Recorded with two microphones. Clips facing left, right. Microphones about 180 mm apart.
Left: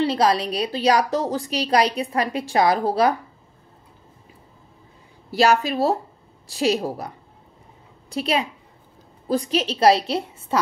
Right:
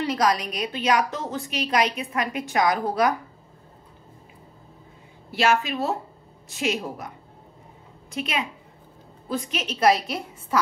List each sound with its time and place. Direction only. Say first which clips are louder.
0.0 s a woman's voice: left 4 dB; 30° left (ahead or behind)
5.3 s a woman's voice: left 4 dB; 35° left (ahead or behind)
8.1 s a woman's voice: left 5 dB; 35° left (ahead or behind)